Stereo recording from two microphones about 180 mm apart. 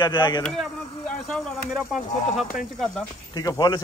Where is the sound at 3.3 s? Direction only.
20° left (ahead or behind).